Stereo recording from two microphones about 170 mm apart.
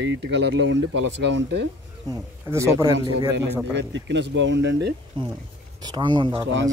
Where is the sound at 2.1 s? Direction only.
15° right (ahead or behind).